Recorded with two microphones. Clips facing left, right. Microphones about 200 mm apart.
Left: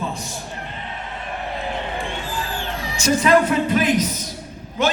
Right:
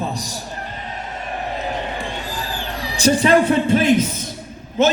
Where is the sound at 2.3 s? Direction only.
35° right (ahead or behind).